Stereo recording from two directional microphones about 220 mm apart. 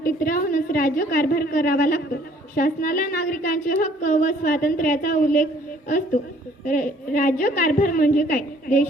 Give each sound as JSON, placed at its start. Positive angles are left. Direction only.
{"t": 0.0, "sound": "a woman's voice", "side_deg": 40}
{"t": 6.7, "sound": "a woman's voice", "side_deg": 40}